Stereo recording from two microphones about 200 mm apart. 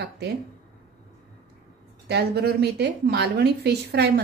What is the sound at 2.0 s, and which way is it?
A woman's voice, 55° right (ahead or behind).